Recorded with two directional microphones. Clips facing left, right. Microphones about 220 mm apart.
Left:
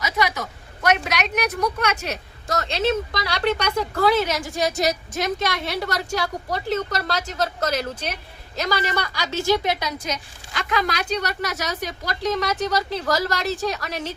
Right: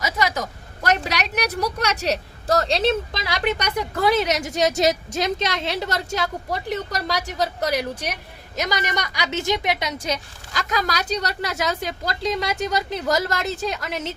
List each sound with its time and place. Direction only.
0.2 s vehicle: 40° right (ahead or behind)
2.6 s a woman's voice: 35° right (ahead or behind); by 9.9 s 20° right (ahead or behind)
10.1 s a woman's voice: 40° right (ahead or behind)
11.4 s speech: 25° right (ahead or behind)